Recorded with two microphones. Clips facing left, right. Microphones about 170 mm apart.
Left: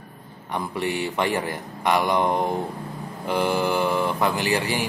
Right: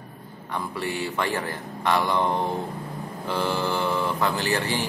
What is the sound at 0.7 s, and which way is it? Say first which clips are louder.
Speech: left 3 dB; 20° left (ahead or behind).